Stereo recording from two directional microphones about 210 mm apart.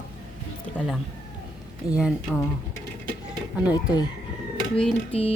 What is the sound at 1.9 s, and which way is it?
Speech, centre (ahead or behind).